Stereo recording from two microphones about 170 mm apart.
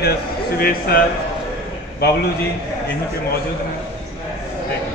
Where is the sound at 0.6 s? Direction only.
65° left (ahead or behind).